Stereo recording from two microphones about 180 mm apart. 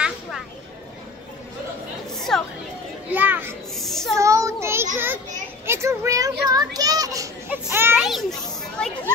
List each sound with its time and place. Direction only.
2.1 s chatter: centre (ahead or behind)
3.1 s children playing: 10° right (ahead or behind)
3.7 s child singing: centre (ahead or behind)
4.1 s child singing: 15° right (ahead or behind)
4.9 s a child's voice: 10° right (ahead or behind)
7.9 s a child's voice: centre (ahead or behind)